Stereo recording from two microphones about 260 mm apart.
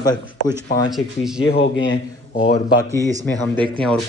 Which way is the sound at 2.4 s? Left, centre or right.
Left.